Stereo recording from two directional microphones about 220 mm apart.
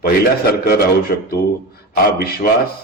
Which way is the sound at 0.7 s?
45° left (ahead or behind).